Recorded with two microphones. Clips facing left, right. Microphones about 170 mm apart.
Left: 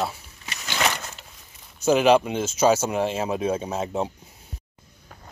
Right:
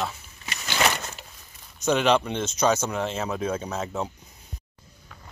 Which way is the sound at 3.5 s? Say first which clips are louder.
Left 3 dB; 30° left (ahead or behind).